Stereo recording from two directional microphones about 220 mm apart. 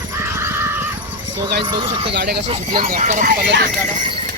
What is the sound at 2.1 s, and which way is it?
Speech, 50° right (ahead or behind).